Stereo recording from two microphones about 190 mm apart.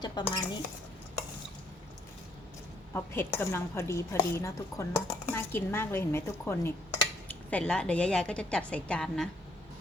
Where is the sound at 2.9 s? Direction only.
10° left (ahead or behind).